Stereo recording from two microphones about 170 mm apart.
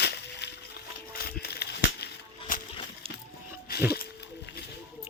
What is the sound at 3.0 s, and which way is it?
Music, 35° right (ahead or behind).